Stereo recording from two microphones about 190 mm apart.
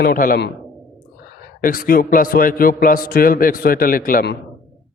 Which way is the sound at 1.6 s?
50° left (ahead or behind).